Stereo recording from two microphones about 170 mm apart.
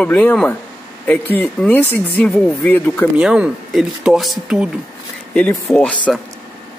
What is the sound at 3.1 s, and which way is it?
Speech, 5° right (ahead or behind).